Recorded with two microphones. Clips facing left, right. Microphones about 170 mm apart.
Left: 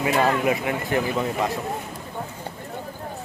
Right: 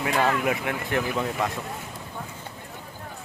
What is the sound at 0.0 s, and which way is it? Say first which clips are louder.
Speech: left 3 dB; 5° left (ahead or behind).